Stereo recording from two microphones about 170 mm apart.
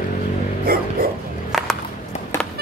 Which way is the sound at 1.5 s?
Centre (ahead or behind).